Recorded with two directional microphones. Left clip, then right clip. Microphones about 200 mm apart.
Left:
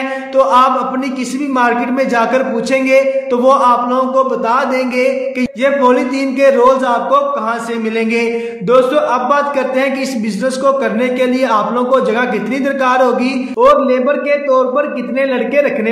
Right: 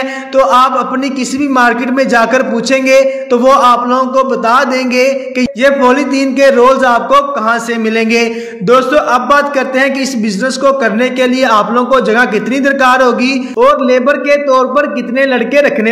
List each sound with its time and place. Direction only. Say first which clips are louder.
0.4 s a man's voice: right 2 dB; 25° right (ahead or behind)